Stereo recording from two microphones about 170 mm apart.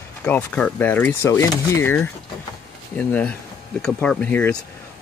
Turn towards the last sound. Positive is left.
turn(degrees=10)  # may be behind; listen again after turning